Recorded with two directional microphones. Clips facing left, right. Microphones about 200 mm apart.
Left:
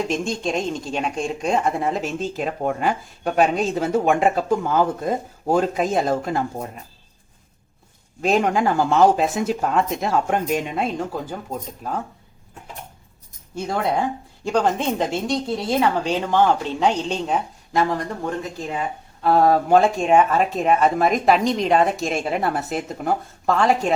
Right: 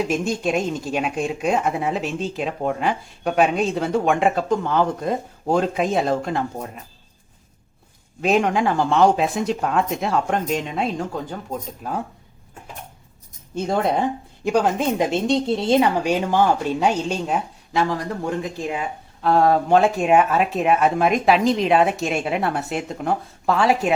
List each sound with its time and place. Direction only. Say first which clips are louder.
0.0 s speech: right 2 dB; 5° right (ahead or behind)
8.2 s speech: even; centre (ahead or behind)
14.4 s speech: right 1 dB; 5° right (ahead or behind); by 15.9 s 25° right (ahead or behind)
16.0 s speech: even; 10° right (ahead or behind)
19.2 s speech: even; centre (ahead or behind)